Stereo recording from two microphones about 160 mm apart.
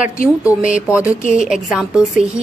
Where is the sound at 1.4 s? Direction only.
5° right (ahead or behind).